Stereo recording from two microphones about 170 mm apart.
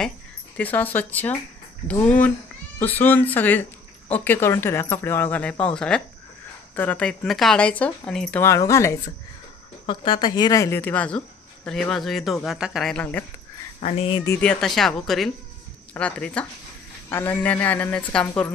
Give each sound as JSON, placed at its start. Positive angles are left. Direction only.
{"t": 0.6, "sound": "speech", "side_deg": 10}
{"t": 8.4, "sound": "speech", "side_deg": 20}
{"t": 9.8, "sound": "speech", "side_deg": 30}
{"t": 13.7, "sound": "speech", "side_deg": 40}
{"t": 14.2, "sound": "speech", "side_deg": 10}